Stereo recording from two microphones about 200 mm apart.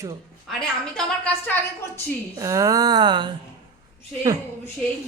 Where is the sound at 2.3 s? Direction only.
15° right (ahead or behind).